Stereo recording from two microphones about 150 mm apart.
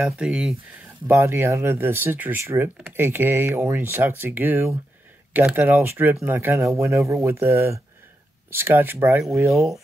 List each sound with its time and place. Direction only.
0.0 s speech: 5° right (ahead or behind)
1.0 s speech: 15° right (ahead or behind)
9.5 s speech: centre (ahead or behind)